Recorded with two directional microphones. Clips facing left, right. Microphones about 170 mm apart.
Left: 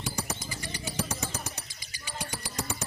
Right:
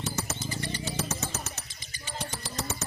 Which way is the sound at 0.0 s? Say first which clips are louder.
Right 2 dB; 10° left (ahead or behind).